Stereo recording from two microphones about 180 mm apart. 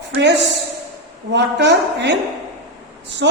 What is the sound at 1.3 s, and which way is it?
Speech, 70° right (ahead or behind).